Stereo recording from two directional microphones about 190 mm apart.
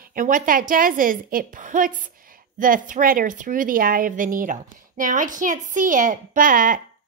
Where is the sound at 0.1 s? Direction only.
45° right (ahead or behind).